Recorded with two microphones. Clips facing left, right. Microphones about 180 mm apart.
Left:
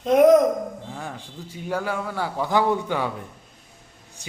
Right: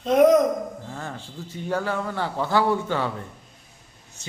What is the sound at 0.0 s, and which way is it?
A man's voice, 10° left (ahead or behind).